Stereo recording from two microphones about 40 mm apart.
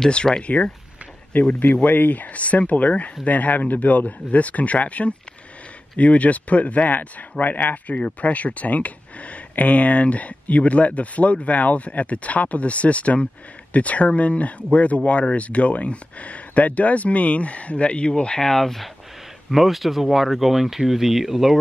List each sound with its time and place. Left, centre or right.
0.1 s speech: left
1.3 s speech: left
18.5 s speech: centre
19.5 s speech: centre